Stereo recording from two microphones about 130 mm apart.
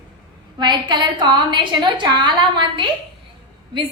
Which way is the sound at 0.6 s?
35° right (ahead or behind).